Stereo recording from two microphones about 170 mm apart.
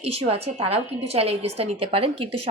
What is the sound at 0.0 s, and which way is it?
A woman's voice, 35° right (ahead or behind).